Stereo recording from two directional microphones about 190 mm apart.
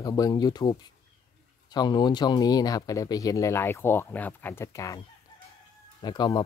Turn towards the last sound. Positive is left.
turn(degrees=20)  # may be behind; listen again after turning